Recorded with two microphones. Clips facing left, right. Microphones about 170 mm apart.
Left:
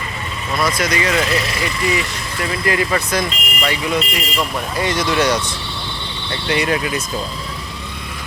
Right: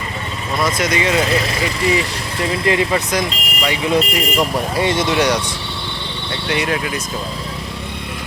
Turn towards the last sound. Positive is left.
turn(degrees=0)  # may be behind; listen again after turning